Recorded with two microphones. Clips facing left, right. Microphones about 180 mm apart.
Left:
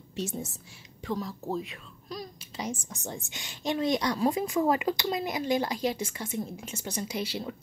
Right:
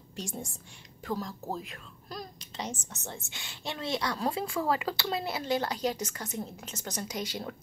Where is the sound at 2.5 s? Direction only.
10° left (ahead or behind).